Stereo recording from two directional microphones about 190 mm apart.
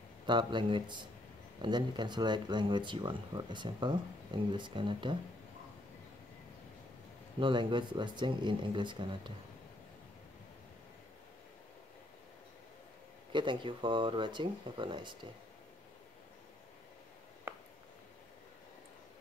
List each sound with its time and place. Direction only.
0.3 s speech: 25° right (ahead or behind)
7.3 s speech: 25° right (ahead or behind)
13.3 s speech: 25° right (ahead or behind)